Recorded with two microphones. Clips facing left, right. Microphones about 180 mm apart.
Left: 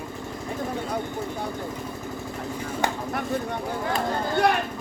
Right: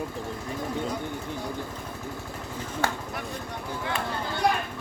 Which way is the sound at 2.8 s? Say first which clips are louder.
Left 2 dB; 20° left (ahead or behind).